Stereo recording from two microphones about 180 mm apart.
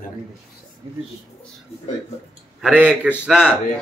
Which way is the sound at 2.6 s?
5° right (ahead or behind).